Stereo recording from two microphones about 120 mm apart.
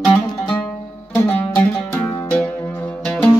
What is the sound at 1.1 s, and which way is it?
Music, 15° left (ahead or behind).